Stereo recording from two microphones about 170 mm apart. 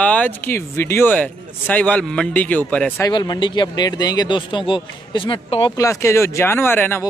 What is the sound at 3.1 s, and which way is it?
Speech, 25° left (ahead or behind).